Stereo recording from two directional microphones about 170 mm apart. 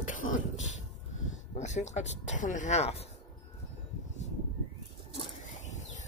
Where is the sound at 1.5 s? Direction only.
45° left (ahead or behind).